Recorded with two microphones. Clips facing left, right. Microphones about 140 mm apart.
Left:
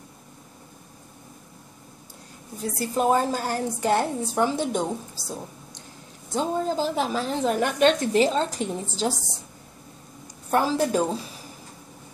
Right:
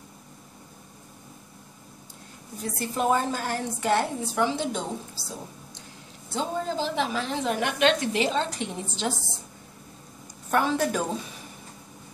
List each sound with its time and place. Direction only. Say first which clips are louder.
2.8 s a woman's voice: left 3 dB; 35° left (ahead or behind)
6.3 s a woman's voice: left 4 dB; 40° left (ahead or behind)
10.5 s a woman's voice: left 2 dB; 30° left (ahead or behind)